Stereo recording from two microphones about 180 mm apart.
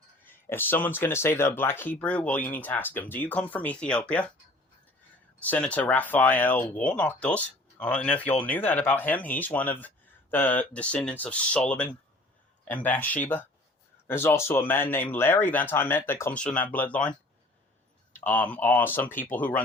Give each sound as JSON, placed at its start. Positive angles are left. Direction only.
{"t": 0.3, "sound": "speech", "side_deg": 10}
{"t": 5.4, "sound": "speech", "side_deg": 10}